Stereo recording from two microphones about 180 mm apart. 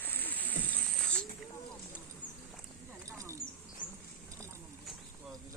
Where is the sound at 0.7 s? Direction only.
5° left (ahead or behind).